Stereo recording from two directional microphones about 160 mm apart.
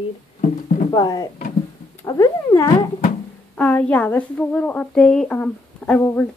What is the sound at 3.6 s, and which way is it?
Speech, 10° left (ahead or behind).